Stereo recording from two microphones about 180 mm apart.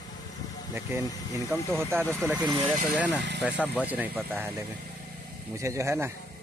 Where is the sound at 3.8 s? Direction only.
10° right (ahead or behind).